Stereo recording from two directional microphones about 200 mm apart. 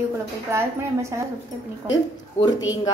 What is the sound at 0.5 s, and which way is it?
Speech, 15° right (ahead or behind).